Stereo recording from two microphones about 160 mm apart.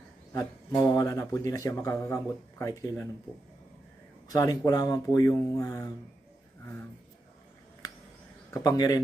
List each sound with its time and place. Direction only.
0.9 s speech: 20° left (ahead or behind)
4.3 s speech: 20° left (ahead or behind)
7.8 s a sound: 25° left (ahead or behind)
8.5 s speech: 20° left (ahead or behind)